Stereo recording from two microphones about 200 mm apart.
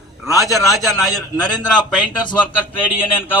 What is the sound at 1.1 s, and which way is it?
Speech, 20° left (ahead or behind).